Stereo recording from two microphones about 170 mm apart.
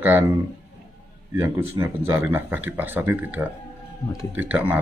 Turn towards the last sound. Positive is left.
turn(degrees=-10)  # may be behind; listen again after turning